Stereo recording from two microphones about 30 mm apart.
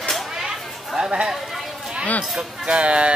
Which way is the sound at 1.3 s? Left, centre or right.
Centre.